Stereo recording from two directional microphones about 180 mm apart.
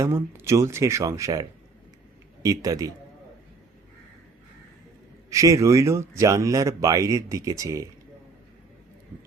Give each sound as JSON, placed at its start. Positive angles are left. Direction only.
{"t": 0.0, "sound": "a man's voice", "side_deg": -15}
{"t": 5.3, "sound": "speech", "side_deg": -15}